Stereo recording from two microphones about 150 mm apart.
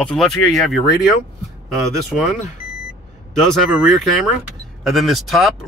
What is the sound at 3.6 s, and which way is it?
Speech, centre (ahead or behind).